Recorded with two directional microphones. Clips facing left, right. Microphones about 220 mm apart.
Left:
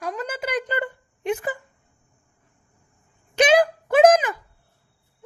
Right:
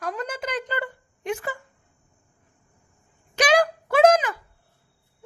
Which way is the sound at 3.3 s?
25° left (ahead or behind).